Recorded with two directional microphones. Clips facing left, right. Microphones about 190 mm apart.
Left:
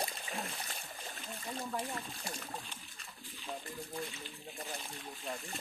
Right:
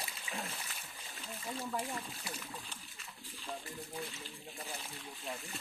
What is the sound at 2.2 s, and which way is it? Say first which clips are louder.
Speech: left 1 dB; 45° left (ahead or behind).